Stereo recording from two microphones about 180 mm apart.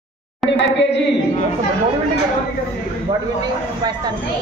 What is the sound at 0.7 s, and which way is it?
Speech, 75° left (ahead or behind).